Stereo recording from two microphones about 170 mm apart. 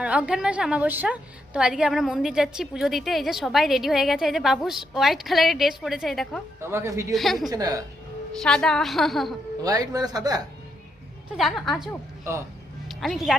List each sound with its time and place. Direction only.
0.0 s a woman's voice: 5° right (ahead or behind)
6.6 s speech: 15° right (ahead or behind)
7.1 s a woman's voice: centre (ahead or behind)
7.5 s speech: 20° right (ahead or behind)
8.4 s a woman's voice: 5° left (ahead or behind)
9.6 s speech: 20° right (ahead or behind)
11.3 s a woman's voice: centre (ahead or behind)
12.2 s speech: 15° right (ahead or behind)
12.9 s speech: centre (ahead or behind)